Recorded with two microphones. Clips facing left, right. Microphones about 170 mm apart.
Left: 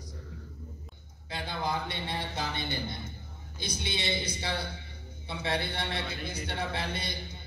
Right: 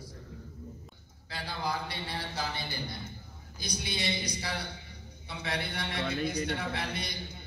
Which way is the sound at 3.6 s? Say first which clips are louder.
Left 1 dB; 25° left (ahead or behind).